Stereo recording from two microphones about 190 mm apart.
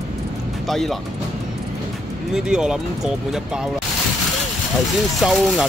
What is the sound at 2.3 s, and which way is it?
Speech, 5° right (ahead or behind).